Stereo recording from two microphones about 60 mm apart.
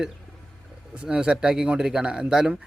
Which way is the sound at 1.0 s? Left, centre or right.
Centre.